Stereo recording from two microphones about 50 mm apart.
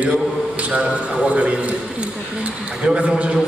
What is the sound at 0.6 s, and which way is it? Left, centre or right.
A man's voice, right.